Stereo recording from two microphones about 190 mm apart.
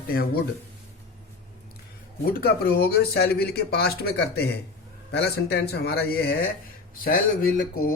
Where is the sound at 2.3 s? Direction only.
55° left (ahead or behind).